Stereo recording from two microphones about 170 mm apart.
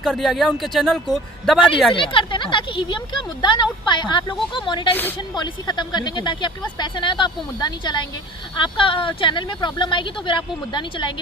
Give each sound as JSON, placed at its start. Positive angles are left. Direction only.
{"t": 0.0, "sound": "speech", "side_deg": 0}
{"t": 1.9, "sound": "speech", "side_deg": 30}